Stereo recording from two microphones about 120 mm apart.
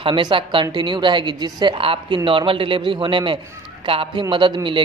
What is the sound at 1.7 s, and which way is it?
Speech, 50° right (ahead or behind).